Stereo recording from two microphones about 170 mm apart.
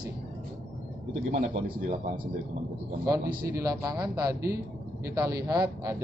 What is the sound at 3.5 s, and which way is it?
Speech, 20° right (ahead or behind).